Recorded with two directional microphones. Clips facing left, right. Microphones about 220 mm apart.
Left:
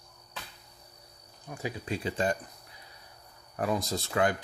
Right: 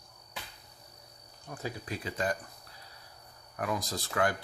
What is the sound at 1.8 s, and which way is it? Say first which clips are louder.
Speech: left 4 dB; 25° left (ahead or behind).